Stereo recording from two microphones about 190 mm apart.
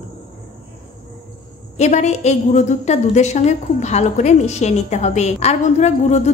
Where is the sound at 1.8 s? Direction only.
40° left (ahead or behind).